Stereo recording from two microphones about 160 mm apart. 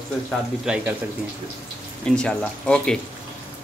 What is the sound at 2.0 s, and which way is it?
Speech, 5° left (ahead or behind).